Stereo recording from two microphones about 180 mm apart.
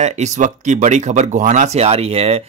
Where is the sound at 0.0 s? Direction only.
40° right (ahead or behind).